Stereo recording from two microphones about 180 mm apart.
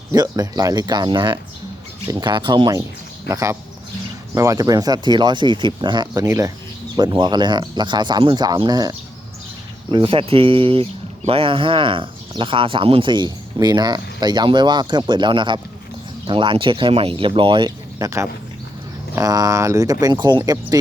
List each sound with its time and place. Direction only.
0.1 s speech: 20° right (ahead or behind)